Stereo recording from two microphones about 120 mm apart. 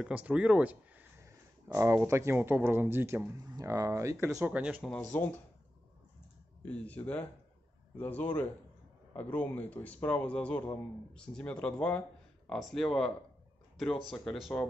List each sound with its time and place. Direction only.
0.0 s speech: 10° right (ahead or behind)
1.2 s speech: 25° right (ahead or behind)
3.3 s speech: 30° right (ahead or behind)
4.6 s speech: 10° right (ahead or behind)
4.8 s a man's voice: 10° left (ahead or behind)
6.6 s a man's voice: 10° left (ahead or behind)
14.1 s speech: 5° left (ahead or behind)